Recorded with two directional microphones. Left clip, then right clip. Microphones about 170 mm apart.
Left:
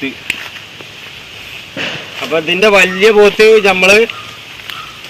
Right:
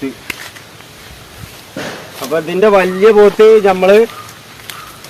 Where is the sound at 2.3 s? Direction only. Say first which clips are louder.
Left 1 dB; 20° right (ahead or behind).